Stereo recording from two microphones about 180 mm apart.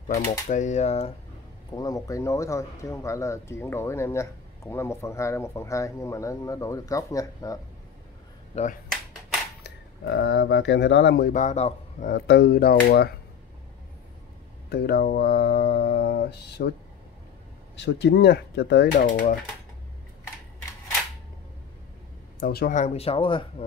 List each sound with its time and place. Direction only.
0.1 s speech: 45° left (ahead or behind)
1.8 s speech: 20° left (ahead or behind)
8.5 s speech: 35° left (ahead or behind)
9.6 s speech: 75° left (ahead or behind)
11.2 s a man's voice: 40° left (ahead or behind)
12.3 s speech: 65° left (ahead or behind)
14.7 s speech: 60° left (ahead or behind)
17.7 s speech: 70° left (ahead or behind); by 19.3 s 50° left (ahead or behind)
22.4 s speech: 55° left (ahead or behind)
22.8 s speech: 35° left (ahead or behind)